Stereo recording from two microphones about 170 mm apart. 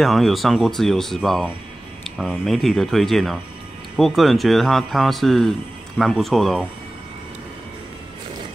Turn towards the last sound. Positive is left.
turn(degrees=0)  # may be behind; listen again after turning